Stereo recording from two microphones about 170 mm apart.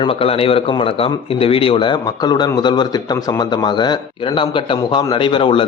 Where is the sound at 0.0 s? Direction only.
35° left (ahead or behind).